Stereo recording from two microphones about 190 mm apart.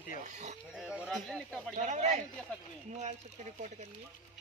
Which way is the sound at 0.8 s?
5° right (ahead or behind).